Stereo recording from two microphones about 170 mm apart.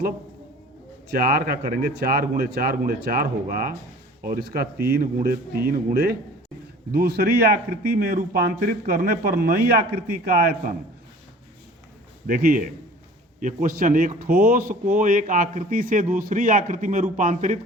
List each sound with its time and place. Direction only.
1.3 s a man's voice: 60° right (ahead or behind)
12.3 s a man's voice: 60° right (ahead or behind)